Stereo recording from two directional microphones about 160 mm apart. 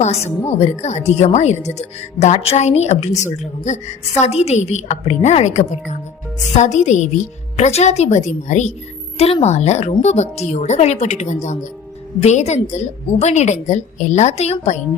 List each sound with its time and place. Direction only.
0.0 s a woman's voice: 40° left (ahead or behind)